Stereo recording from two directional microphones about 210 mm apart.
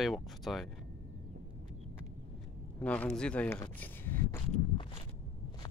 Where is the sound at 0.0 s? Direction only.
Centre (ahead or behind).